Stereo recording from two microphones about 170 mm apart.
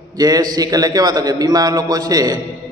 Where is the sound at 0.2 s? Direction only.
25° right (ahead or behind).